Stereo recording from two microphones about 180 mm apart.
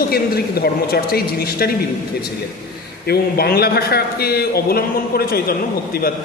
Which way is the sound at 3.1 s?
60° left (ahead or behind).